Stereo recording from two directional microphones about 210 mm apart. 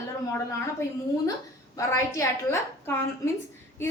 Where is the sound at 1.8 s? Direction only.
15° left (ahead or behind).